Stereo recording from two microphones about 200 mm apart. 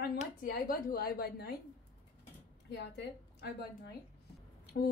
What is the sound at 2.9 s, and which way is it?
Speech, 60° left (ahead or behind).